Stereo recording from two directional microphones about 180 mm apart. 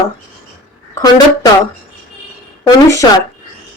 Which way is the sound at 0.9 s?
20° left (ahead or behind).